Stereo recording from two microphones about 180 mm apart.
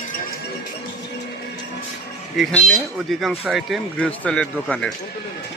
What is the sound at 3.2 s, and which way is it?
A man's voice, centre (ahead or behind).